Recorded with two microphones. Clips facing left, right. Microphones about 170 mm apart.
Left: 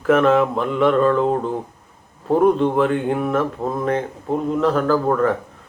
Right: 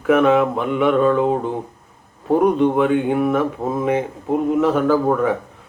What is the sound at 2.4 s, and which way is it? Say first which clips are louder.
Speech: even; centre (ahead or behind).